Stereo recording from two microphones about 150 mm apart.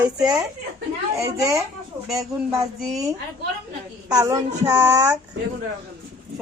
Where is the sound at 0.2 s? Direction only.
25° right (ahead or behind).